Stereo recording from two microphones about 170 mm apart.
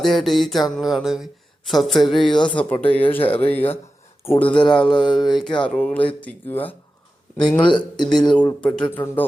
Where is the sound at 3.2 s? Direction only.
35° left (ahead or behind).